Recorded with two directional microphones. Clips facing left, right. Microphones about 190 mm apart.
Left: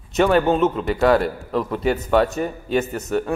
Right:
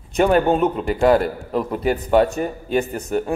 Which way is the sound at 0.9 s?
30° right (ahead or behind).